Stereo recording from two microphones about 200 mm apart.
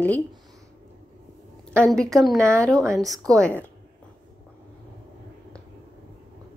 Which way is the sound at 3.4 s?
5° left (ahead or behind).